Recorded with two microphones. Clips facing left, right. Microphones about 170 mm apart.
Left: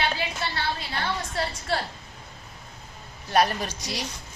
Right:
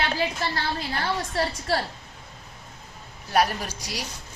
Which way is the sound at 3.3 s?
10° right (ahead or behind).